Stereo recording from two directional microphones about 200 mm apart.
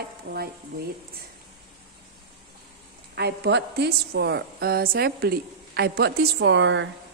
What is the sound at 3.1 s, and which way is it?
A woman's voice, 55° right (ahead or behind).